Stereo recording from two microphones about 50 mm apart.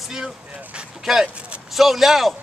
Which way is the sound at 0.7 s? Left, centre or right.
Centre.